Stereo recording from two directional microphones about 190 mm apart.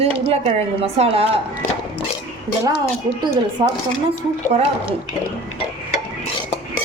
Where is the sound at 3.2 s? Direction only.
25° right (ahead or behind).